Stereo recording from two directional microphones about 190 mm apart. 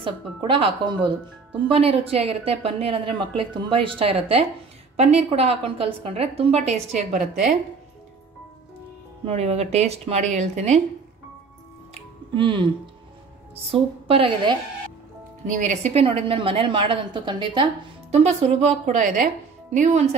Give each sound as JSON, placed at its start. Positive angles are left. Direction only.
{"t": 0.0, "sound": "a woman's voice", "side_deg": -25}
{"t": 9.2, "sound": "a woman's voice", "side_deg": -35}
{"t": 11.9, "sound": "music", "side_deg": -25}
{"t": 13.7, "sound": "a woman's voice", "side_deg": -30}
{"t": 15.4, "sound": "a woman's voice", "side_deg": -40}
{"t": 18.1, "sound": "a woman's voice", "side_deg": -35}